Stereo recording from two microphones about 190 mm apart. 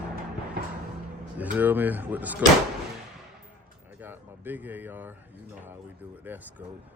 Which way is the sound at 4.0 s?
10° right (ahead or behind).